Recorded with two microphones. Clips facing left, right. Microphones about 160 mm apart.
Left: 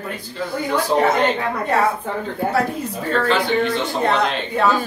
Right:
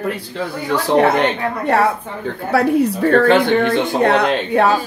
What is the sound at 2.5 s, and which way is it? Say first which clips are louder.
Speech: right 12 dB; 65° right (ahead or behind).